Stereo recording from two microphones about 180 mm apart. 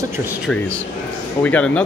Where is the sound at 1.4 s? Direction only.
10° left (ahead or behind).